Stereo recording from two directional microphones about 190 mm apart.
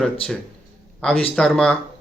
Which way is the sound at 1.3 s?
5° left (ahead or behind).